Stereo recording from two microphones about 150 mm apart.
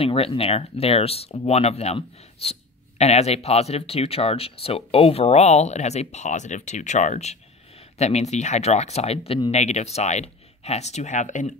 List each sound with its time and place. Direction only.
0.0 s speech: 40° left (ahead or behind); by 11.5 s 55° left (ahead or behind)